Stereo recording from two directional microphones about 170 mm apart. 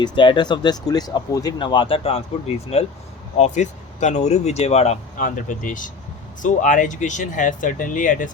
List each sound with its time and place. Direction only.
0.0 s speech: 25° left (ahead or behind)
5.2 s speech: 50° left (ahead or behind)